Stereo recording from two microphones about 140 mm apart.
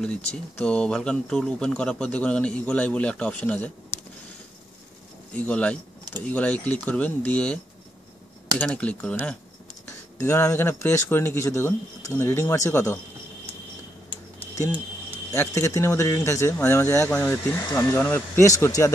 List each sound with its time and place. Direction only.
0.6 s a man's voice: 5° left (ahead or behind)
5.3 s a man's voice: 10° left (ahead or behind)
10.2 s speech: 15° left (ahead or behind)
14.4 s typing: 15° left (ahead or behind)
15.3 s a man's voice: 20° left (ahead or behind)